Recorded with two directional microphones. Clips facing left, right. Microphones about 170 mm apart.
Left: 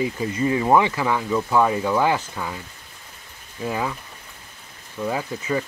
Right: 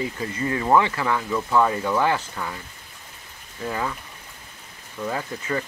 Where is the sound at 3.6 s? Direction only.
10° left (ahead or behind).